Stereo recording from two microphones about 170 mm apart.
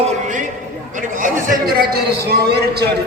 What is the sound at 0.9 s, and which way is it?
A man's voice, 50° right (ahead or behind).